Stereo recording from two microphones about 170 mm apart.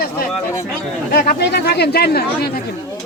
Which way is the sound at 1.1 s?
55° left (ahead or behind).